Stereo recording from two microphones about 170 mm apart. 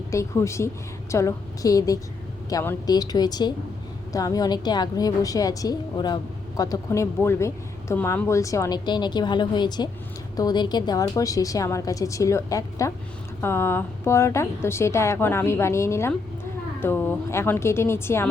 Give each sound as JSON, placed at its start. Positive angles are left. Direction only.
{"t": 0.1, "sound": "a woman's voice", "side_deg": 15}